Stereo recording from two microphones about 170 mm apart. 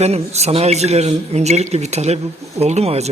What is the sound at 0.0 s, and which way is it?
Speech, 40° right (ahead or behind).